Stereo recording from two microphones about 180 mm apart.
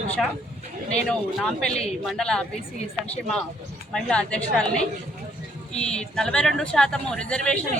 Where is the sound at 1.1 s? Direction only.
5° left (ahead or behind).